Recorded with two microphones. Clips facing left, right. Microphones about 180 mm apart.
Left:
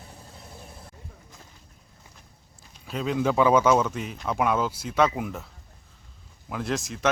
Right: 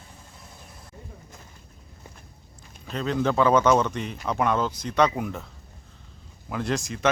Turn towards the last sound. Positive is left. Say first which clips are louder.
# right 1 dB
turn(degrees=0)  # may be behind; listen again after turning